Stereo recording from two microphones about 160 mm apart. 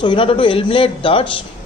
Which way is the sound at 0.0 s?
30° left (ahead or behind).